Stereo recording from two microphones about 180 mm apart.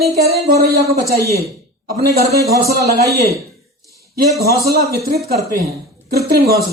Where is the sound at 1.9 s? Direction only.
55° right (ahead or behind).